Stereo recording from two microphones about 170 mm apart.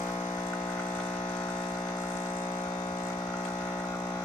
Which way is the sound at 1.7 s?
20° left (ahead or behind).